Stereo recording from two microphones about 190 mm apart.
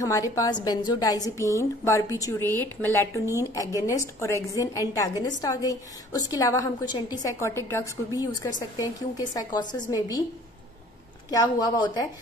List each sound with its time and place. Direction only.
0.0 s a woman's voice: 15° left (ahead or behind)
11.2 s a woman's voice: 20° left (ahead or behind)